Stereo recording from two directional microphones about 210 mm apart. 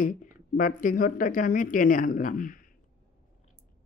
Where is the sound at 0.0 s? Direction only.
40° left (ahead or behind).